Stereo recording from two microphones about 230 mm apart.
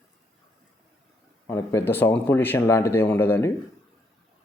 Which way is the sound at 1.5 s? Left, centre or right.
Centre.